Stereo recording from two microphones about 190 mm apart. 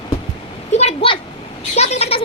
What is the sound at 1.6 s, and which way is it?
Vehicle, 35° left (ahead or behind).